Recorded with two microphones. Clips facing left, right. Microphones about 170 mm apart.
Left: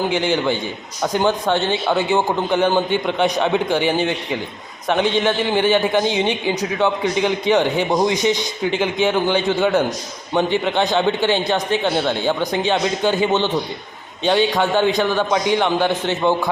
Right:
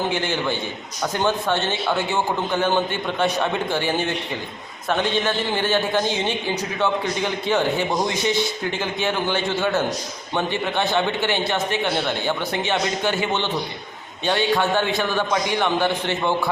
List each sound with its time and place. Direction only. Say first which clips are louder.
0.1 s a man's voice: left 5 dB; 15° left (ahead or behind)